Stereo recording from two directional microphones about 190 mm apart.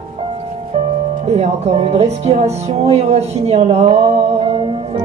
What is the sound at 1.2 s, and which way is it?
Music, 35° right (ahead or behind).